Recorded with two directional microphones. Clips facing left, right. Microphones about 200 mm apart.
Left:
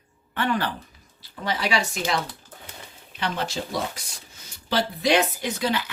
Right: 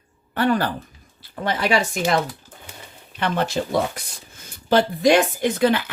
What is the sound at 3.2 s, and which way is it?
Speech, 55° right (ahead or behind).